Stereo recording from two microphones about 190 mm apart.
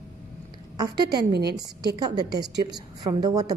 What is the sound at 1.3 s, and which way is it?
Speech, 60° right (ahead or behind).